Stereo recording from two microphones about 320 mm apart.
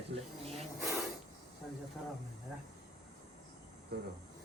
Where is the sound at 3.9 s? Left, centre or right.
Right.